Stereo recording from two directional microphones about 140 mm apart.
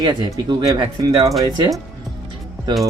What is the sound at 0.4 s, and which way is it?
Speech, 35° right (ahead or behind).